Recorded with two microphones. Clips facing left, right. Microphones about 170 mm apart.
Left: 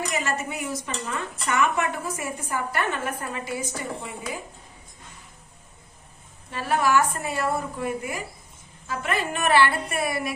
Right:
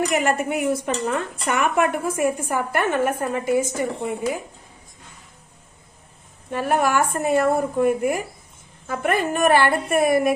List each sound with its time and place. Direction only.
0.1 s a woman's voice: 55° right (ahead or behind)
6.5 s a woman's voice: 55° right (ahead or behind)